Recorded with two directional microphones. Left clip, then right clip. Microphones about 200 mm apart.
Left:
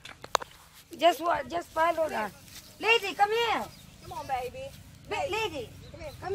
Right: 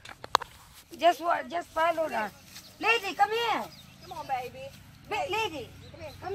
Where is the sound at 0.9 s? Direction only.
70° left (ahead or behind).